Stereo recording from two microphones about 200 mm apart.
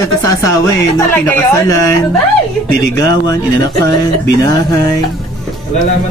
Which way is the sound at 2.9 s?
20° left (ahead or behind).